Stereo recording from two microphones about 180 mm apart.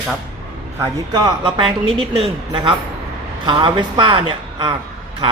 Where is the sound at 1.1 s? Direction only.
25° right (ahead or behind).